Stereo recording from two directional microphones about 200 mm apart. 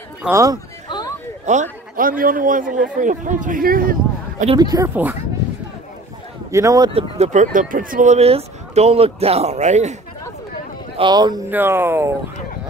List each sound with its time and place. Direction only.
0.2 s speech: 15° right (ahead or behind)
0.8 s a sound: 20° left (ahead or behind)
1.4 s speech: 35° right (ahead or behind)
4.6 s speech: 20° right (ahead or behind)
6.5 s speech: 15° right (ahead or behind)
6.9 s speech: 30° right (ahead or behind)
11.0 s speech: 20° right (ahead or behind)